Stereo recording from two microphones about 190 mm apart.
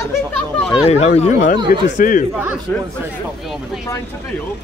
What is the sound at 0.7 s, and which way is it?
Speech, 30° left (ahead or behind).